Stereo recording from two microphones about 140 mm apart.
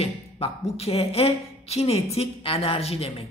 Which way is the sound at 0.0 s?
45° left (ahead or behind).